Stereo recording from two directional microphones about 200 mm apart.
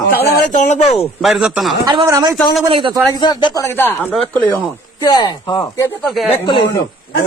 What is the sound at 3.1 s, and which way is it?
Speech, 20° left (ahead or behind).